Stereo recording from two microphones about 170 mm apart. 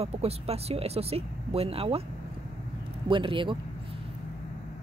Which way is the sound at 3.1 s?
30° right (ahead or behind).